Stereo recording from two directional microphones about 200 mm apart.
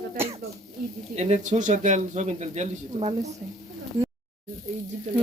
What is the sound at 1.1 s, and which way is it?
Speech, 35° right (ahead or behind).